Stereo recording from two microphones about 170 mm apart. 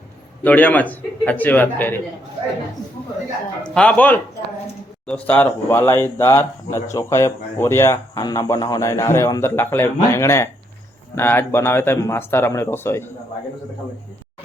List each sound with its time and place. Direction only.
0.4 s speech: 10° left (ahead or behind)
3.6 s speech: 5° left (ahead or behind)